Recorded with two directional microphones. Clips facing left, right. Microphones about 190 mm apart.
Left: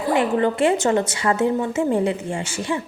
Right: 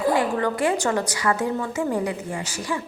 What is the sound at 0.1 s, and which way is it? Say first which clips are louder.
A woman's voice: left 7 dB; 20° left (ahead or behind).